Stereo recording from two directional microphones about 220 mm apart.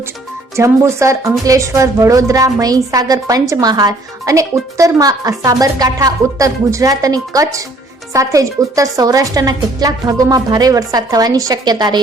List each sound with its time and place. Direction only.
0.5 s a woman's voice: 15° right (ahead or behind)